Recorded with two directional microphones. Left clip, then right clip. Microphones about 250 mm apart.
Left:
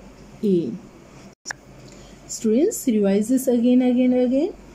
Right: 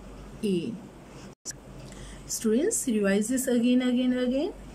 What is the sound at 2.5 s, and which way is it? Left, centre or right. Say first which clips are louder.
Speech: left 7 dB; centre.